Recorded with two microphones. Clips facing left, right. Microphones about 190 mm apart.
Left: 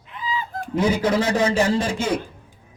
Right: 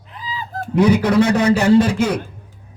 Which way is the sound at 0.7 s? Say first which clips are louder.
Right 6 dB; 65° right (ahead or behind).